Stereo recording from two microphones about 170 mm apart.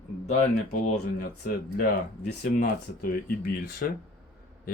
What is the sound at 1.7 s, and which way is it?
Speech, 50° left (ahead or behind).